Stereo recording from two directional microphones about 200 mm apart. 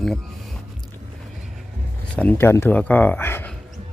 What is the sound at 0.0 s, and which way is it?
Music, centre (ahead or behind).